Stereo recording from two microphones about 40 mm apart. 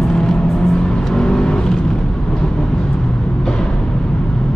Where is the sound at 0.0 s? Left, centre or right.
Centre.